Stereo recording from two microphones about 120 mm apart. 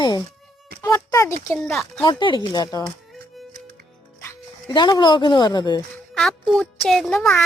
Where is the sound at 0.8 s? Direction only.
25° left (ahead or behind).